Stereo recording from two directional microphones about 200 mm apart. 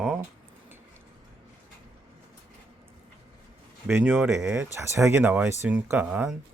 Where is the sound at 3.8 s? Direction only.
10° right (ahead or behind).